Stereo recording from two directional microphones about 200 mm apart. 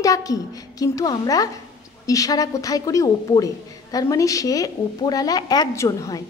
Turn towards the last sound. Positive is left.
turn(degrees=15)  # may be behind; listen again after turning